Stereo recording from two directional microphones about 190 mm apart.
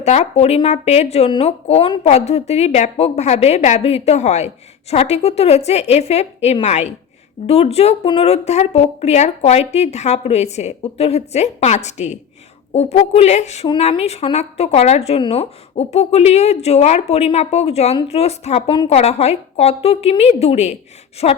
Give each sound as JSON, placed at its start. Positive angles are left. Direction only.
{"t": 0.0, "sound": "a woman's voice", "side_deg": 35}